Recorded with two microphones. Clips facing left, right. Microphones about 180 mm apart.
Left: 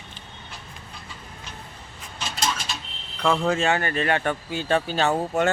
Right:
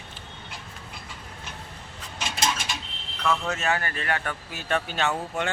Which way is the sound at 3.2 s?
30° left (ahead or behind).